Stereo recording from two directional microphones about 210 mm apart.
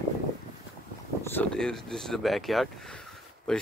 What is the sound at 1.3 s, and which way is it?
Speech, 5° left (ahead or behind).